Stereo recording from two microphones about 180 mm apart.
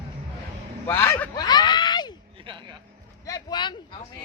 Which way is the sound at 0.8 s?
15° left (ahead or behind).